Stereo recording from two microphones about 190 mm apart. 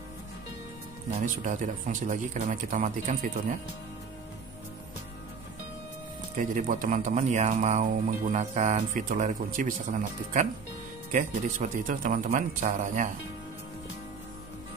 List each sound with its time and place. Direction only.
1.2 s speech: 40° right (ahead or behind)
6.3 s speech: 45° right (ahead or behind)